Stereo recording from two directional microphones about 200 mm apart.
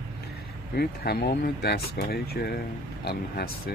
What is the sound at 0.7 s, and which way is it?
Speech, 50° left (ahead or behind).